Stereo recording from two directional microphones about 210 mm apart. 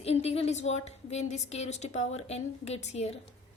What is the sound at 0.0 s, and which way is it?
A woman's voice, 30° left (ahead or behind).